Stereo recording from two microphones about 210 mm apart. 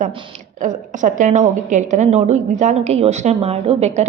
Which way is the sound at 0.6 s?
40° right (ahead or behind).